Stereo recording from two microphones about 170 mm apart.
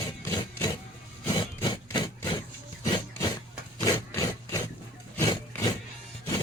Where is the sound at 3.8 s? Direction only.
20° left (ahead or behind).